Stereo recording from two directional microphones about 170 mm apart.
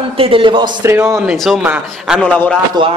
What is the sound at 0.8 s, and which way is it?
Speech, 15° right (ahead or behind).